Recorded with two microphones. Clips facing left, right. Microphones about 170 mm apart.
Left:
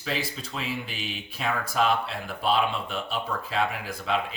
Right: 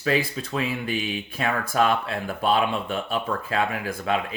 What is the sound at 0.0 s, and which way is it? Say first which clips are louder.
Speech: right 7 dB; 55° right (ahead or behind).